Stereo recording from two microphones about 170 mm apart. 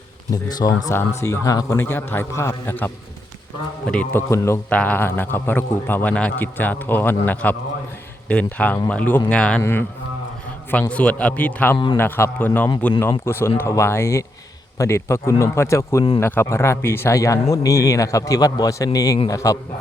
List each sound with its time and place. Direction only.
0.3 s a man's voice: 25° left (ahead or behind)